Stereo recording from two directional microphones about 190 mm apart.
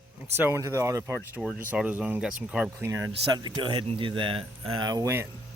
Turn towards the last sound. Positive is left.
turn(degrees=-15)  # may be behind; listen again after turning